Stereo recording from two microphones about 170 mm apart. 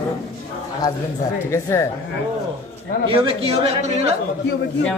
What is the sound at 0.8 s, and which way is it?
A woman's voice, 20° left (ahead or behind).